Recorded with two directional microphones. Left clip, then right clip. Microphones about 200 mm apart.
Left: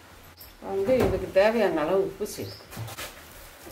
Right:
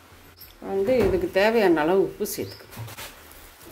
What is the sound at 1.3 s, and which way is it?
Speech, 45° right (ahead or behind).